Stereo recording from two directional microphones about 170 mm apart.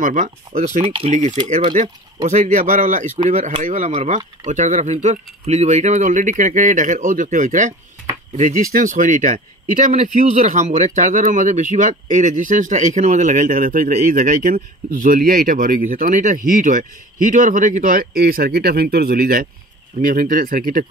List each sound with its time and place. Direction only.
0.0 s speech: 50° right (ahead or behind)